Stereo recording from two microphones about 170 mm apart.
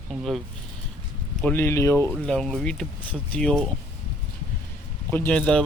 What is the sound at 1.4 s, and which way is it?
Speech, 15° left (ahead or behind).